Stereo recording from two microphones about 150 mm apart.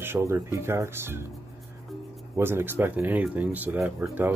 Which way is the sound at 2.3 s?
15° right (ahead or behind).